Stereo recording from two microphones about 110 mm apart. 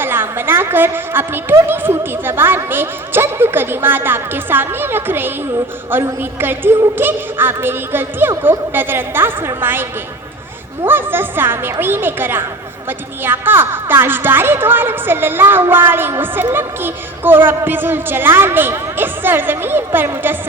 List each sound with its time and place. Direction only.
0.0 s a woman's voice: 20° right (ahead or behind)
10.8 s a woman's voice: 20° right (ahead or behind)